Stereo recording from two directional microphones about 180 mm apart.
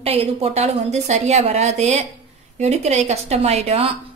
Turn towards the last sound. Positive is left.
turn(degrees=-35)  # may be behind; listen again after turning